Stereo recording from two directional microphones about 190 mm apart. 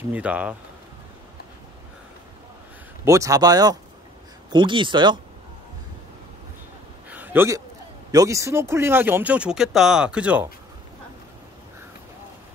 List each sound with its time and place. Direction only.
0.1 s speech: 5° right (ahead or behind)
3.1 s speech: 15° right (ahead or behind)
7.1 s a sound: 10° right (ahead or behind)
8.1 s speech: 15° right (ahead or behind)